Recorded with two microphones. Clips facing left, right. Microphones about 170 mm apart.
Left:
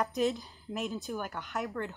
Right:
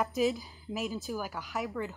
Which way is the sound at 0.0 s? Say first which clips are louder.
Right 1 dB; centre (ahead or behind).